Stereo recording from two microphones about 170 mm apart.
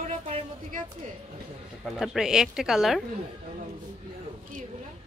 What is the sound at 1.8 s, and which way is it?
Speech, centre (ahead or behind).